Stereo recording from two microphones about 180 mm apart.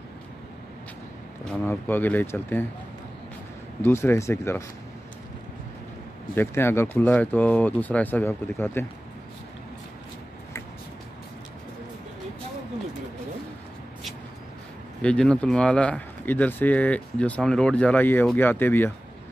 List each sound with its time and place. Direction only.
1.4 s speech: 5° left (ahead or behind)
3.8 s speech: 15° left (ahead or behind)
6.3 s speech: 15° left (ahead or behind)
15.0 s speech: 5° left (ahead or behind)